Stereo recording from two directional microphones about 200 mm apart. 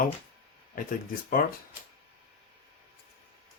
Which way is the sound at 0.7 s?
45° left (ahead or behind).